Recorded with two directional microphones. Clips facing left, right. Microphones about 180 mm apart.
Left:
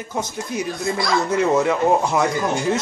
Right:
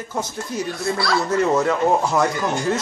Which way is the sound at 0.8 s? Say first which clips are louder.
Even; 15° left (ahead or behind).